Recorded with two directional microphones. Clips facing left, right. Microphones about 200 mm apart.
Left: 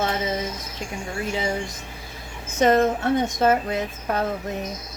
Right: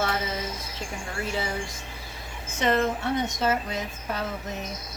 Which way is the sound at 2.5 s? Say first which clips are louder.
Left 6 dB; 45° left (ahead or behind).